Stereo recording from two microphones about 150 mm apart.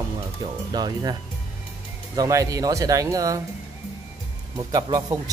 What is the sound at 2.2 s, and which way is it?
Speech, 20° right (ahead or behind).